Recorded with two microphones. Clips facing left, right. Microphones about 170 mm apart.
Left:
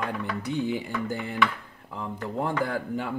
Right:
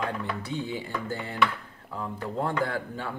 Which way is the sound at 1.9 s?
15° left (ahead or behind).